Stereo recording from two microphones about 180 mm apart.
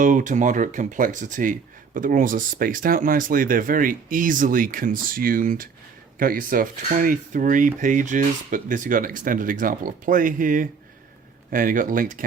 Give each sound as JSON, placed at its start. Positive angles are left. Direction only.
{"t": 0.0, "sound": "speech", "side_deg": -45}